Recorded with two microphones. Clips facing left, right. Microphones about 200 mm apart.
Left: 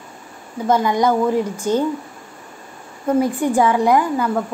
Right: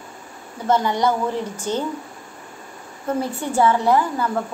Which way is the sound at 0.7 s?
10° left (ahead or behind).